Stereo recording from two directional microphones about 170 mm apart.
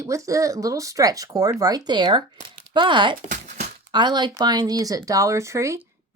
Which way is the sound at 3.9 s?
25° right (ahead or behind).